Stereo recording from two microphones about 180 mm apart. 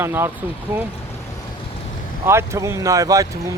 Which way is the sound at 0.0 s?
15° right (ahead or behind).